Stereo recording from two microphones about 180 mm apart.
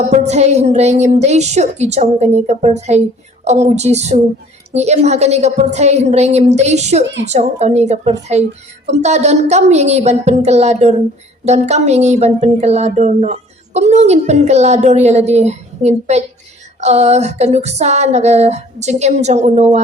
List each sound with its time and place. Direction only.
0.1 s speech: 40° right (ahead or behind)
7.0 s a woman's voice: 80° right
7.3 s speech: 40° right (ahead or behind)